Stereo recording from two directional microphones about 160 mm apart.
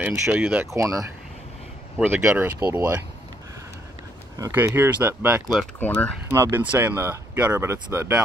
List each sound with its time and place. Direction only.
0.0 s speech: 10° right (ahead or behind)
0.7 s speech: 20° right (ahead or behind)
2.0 s speech: 10° right (ahead or behind)
4.4 s speech: 15° right (ahead or behind)
5.8 s speech: 10° left (ahead or behind)
6.3 s speech: 15° right (ahead or behind)